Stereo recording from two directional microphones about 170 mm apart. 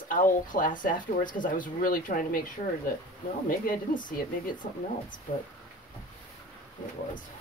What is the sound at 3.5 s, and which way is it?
Speech, 55° left (ahead or behind).